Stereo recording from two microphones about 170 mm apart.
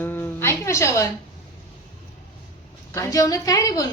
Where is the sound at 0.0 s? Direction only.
10° left (ahead or behind).